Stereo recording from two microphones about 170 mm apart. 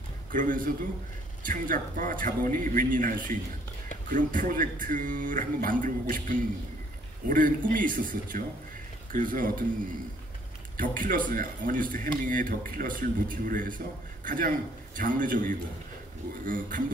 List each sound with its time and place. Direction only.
0.3 s speech: 50° right (ahead or behind)
10.8 s a man's voice: 55° right (ahead or behind)